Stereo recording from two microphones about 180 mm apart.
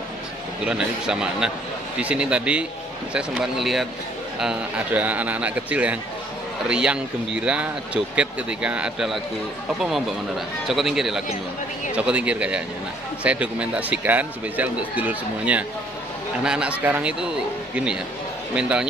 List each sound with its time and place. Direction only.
0.7 s speech: 5° right (ahead or behind)
18.5 s speech: 5° right (ahead or behind)